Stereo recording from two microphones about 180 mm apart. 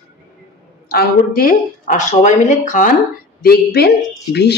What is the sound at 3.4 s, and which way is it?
A woman's voice, 60° left (ahead or behind).